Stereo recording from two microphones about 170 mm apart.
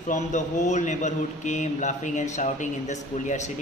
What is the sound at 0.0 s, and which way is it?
A man's voice, 45° left (ahead or behind).